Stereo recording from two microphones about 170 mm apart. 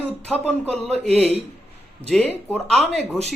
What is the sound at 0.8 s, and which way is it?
Speech, 40° right (ahead or behind).